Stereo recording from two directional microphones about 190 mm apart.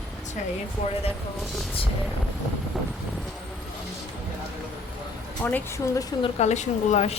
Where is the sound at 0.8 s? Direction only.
35° left (ahead or behind).